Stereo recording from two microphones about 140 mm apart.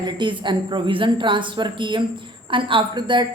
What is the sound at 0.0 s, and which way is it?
A woman's voice, 35° right (ahead or behind).